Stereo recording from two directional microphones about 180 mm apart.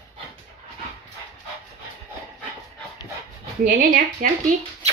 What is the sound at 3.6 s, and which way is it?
Speech, 50° right (ahead or behind).